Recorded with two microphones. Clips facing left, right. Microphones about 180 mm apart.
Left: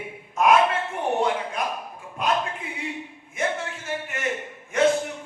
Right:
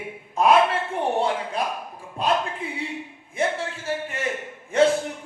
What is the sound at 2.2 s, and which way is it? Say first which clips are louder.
Speech: right 2 dB; 30° right (ahead or behind).